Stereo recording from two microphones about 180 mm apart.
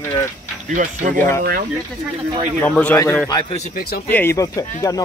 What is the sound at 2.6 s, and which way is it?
Speech, 10° left (ahead or behind).